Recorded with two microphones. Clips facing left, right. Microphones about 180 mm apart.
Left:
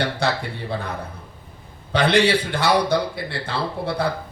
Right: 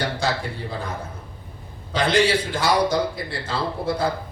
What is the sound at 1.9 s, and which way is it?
Speech, 65° left (ahead or behind).